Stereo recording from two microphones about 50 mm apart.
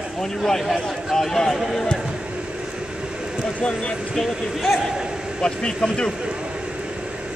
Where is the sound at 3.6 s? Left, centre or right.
Centre.